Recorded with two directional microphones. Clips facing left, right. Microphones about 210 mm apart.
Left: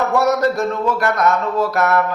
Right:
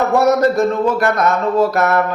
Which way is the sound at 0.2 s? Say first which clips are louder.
Right 4 dB; 20° right (ahead or behind).